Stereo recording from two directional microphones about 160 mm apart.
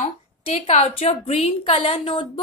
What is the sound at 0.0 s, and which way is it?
A woman's voice, 45° left (ahead or behind).